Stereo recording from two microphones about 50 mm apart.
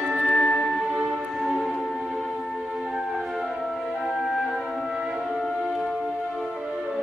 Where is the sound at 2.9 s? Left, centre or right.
Centre.